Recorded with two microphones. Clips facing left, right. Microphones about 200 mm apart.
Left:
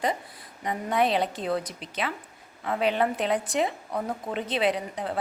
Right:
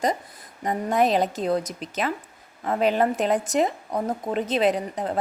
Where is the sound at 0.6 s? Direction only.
45° right (ahead or behind).